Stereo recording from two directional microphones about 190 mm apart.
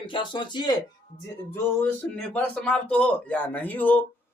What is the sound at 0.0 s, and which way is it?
Speech, 25° left (ahead or behind).